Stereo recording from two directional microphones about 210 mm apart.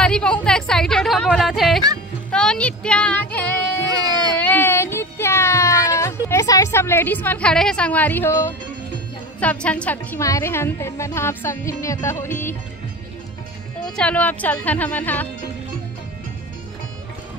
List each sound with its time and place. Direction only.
0.0 s a sound: 5° left (ahead or behind)
6.2 s a woman's voice: 15° left (ahead or behind)
13.8 s a woman's voice: 5° left (ahead or behind)